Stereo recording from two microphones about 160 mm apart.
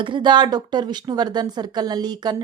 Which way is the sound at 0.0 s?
30° right (ahead or behind).